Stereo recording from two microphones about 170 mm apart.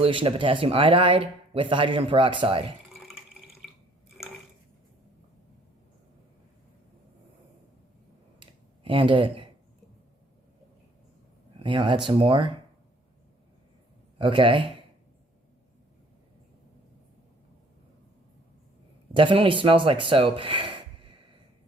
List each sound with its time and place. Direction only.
0.0 s speech: 30° right (ahead or behind)
8.4 s a sound: 30° right (ahead or behind)
11.6 s speech: 30° right (ahead or behind)
14.2 s speech: 30° right (ahead or behind)
19.1 s speech: 30° right (ahead or behind)